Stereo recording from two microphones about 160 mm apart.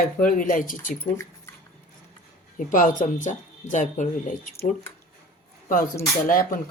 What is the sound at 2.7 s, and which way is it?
Speech, 55° left (ahead or behind).